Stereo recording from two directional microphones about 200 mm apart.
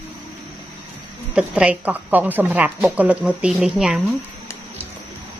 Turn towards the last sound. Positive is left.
turn(degrees=-5)  # may be behind; listen again after turning